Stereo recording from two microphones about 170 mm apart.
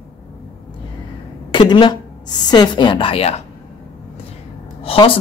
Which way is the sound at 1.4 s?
25° left (ahead or behind).